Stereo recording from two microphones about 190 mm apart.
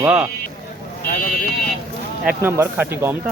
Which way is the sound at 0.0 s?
5° right (ahead or behind).